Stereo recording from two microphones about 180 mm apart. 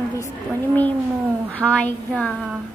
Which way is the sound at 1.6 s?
5° left (ahead or behind).